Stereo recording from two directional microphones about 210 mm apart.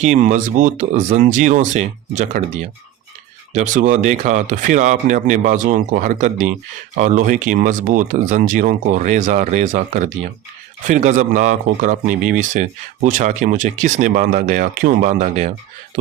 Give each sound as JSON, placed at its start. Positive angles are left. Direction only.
{"t": 0.0, "sound": "speech", "side_deg": -35}